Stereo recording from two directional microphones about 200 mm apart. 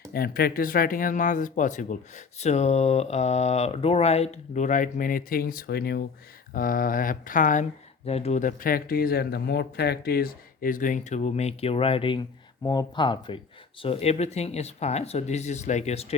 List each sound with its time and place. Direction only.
0.1 s speech: 50° left (ahead or behind); by 16.1 s 30° left (ahead or behind)